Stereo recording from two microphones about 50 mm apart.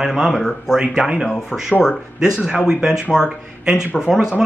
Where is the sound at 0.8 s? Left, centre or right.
Centre.